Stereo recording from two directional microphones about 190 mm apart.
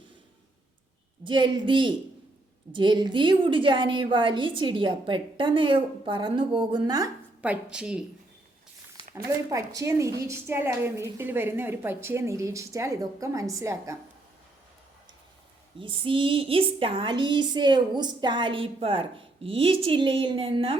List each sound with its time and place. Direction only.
1.2 s a woman's voice: 25° right (ahead or behind)
7.4 s a woman's voice: 5° right (ahead or behind)
9.1 s a woman's voice: 15° right (ahead or behind)
15.8 s a woman's voice: 25° right (ahead or behind)